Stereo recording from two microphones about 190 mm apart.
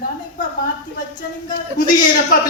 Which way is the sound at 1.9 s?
50° left (ahead or behind).